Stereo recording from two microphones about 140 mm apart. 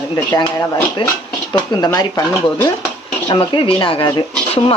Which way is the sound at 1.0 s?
40° left (ahead or behind).